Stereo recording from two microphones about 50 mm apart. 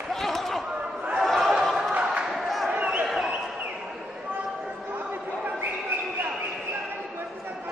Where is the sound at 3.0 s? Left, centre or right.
Centre.